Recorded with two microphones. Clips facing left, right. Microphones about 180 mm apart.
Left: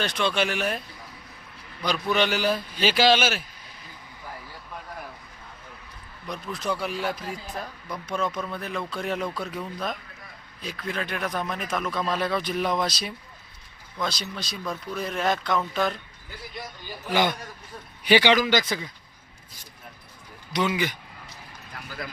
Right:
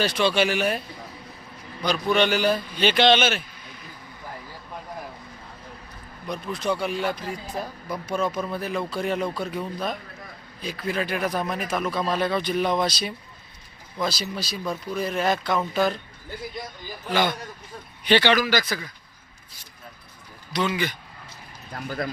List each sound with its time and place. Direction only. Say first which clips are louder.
0.0 s speech: right 4 dB; 5° right (ahead or behind)
1.8 s speech: right 3 dB; centre (ahead or behind)
6.2 s speech: right 3 dB; centre (ahead or behind)
7.5 s speech: right 4 dB; 10° right (ahead or behind)
17.1 s speech: even; 15° left (ahead or behind)
20.5 s speech: even; 15° left (ahead or behind)
21.7 s speech: right 8 dB; 45° right (ahead or behind)